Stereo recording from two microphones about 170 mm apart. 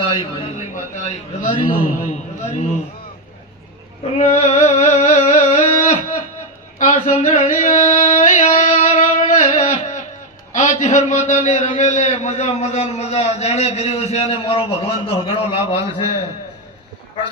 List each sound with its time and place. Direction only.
0.0 s a man's voice: 30° left (ahead or behind)
0.7 s a man's voice: 45° left (ahead or behind)
4.2 s a sound: 40° left (ahead or behind)
10.5 s a man's voice: 45° left (ahead or behind)